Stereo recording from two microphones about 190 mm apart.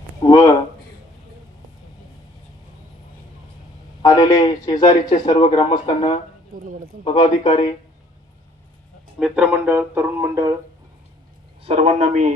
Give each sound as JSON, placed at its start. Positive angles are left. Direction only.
{"t": 0.2, "sound": "a sound", "side_deg": 15}
{"t": 4.0, "sound": "a man's voice", "side_deg": 20}
{"t": 6.6, "sound": "speech", "side_deg": -45}
{"t": 7.0, "sound": "a man's voice", "side_deg": 25}
{"t": 9.1, "sound": "speech", "side_deg": -5}
{"t": 11.6, "sound": "speech", "side_deg": -35}